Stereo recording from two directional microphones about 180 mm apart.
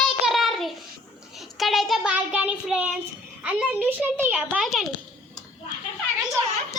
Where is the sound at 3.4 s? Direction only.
5° right (ahead or behind).